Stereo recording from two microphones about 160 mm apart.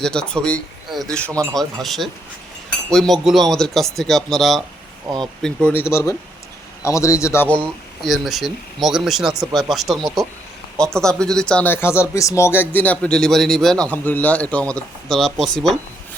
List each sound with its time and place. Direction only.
0.0 s speech: 5° left (ahead or behind)
5.0 s speech: 30° right (ahead or behind)
5.4 s speech: 5° left (ahead or behind)